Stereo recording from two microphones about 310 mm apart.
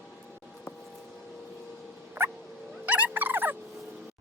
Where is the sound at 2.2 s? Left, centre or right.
Centre.